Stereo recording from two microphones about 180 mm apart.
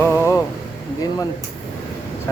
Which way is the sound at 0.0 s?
15° left (ahead or behind).